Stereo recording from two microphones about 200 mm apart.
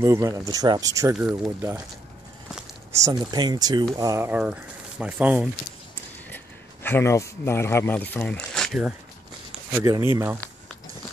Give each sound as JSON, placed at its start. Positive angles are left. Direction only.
{"t": 0.0, "sound": "speech", "side_deg": -15}
{"t": 2.9, "sound": "speech", "side_deg": -20}
{"t": 6.3, "sound": "a man's voice", "side_deg": 10}
{"t": 9.7, "sound": "speech", "side_deg": -15}